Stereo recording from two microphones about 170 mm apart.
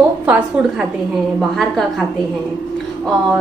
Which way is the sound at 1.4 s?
Centre (ahead or behind).